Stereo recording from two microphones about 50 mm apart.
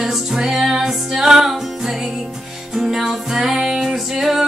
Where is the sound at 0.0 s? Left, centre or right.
Centre.